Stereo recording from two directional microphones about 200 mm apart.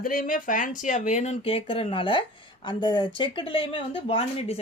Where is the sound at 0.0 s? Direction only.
45° left (ahead or behind).